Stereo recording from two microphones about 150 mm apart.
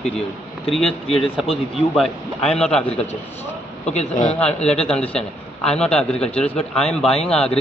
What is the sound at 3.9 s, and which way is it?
Speech, 50° left (ahead or behind).